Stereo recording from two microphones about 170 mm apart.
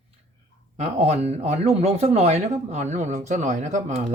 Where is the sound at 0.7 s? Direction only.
40° right (ahead or behind).